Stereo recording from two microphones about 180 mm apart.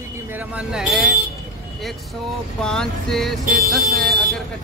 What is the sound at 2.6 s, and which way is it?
Music, centre (ahead or behind).